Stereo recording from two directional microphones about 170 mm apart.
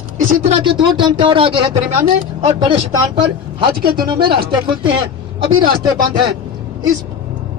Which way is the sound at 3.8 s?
60° right (ahead or behind).